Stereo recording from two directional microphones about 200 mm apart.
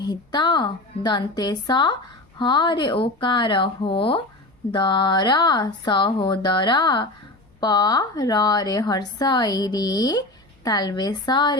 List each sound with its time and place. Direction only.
0.0 s a woman's voice: 20° left (ahead or behind)